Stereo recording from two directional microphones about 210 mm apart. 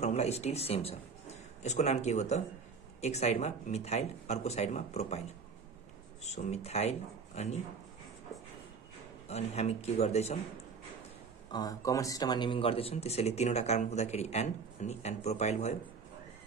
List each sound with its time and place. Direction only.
0.0 s a man's voice: 30° left (ahead or behind)
6.2 s speech: 30° left (ahead or behind)
9.3 s speech: 30° left (ahead or behind)
11.5 s speech: 15° left (ahead or behind); by 15.8 s 30° left (ahead or behind)